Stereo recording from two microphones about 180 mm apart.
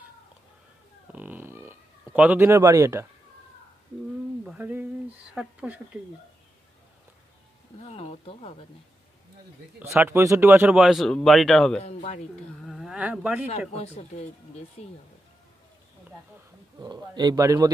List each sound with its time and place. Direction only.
1.1 s a sound: 10° right (ahead or behind)
2.0 s a man's voice: 5° right (ahead or behind)
4.5 s a sound: 10° right (ahead or behind)
5.3 s speech: 5° right (ahead or behind)
7.8 s speech: 35° left (ahead or behind)
9.8 s speech: 15° right (ahead or behind)
11.8 s speech: 35° left (ahead or behind)
12.6 s speech: centre (ahead or behind)
13.7 s speech: 35° left (ahead or behind)
16.8 s a man's voice: 25° right (ahead or behind)